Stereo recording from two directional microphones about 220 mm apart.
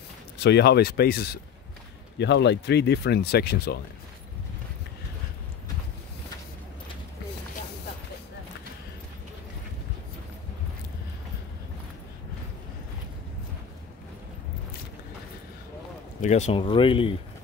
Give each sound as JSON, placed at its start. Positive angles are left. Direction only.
{"t": 0.4, "sound": "speech", "side_deg": 50}
{"t": 16.2, "sound": "speech", "side_deg": 30}